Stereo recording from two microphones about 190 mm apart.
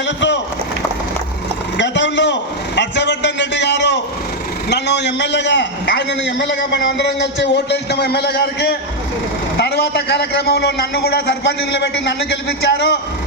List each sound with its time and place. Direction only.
0.0 s speech: 70° left (ahead or behind)
1.8 s a sound: 70° left (ahead or behind)
4.7 s a man's voice: 65° left (ahead or behind)